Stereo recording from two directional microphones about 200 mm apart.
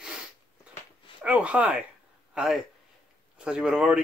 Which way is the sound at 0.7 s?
5° right (ahead or behind).